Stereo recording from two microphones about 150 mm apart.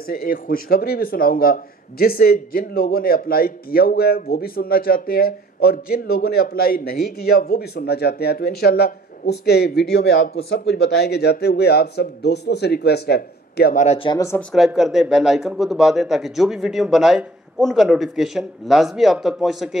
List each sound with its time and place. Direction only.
0.0 s speech: 75° left (ahead or behind)
9.9 s speech: 70° left (ahead or behind)
10.7 s a man's voice: 90° left
13.9 s speech: 35° left (ahead or behind)
14.5 s speech: centre (ahead or behind)